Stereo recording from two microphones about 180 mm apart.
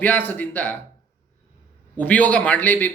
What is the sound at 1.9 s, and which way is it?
Speech, 10° left (ahead or behind).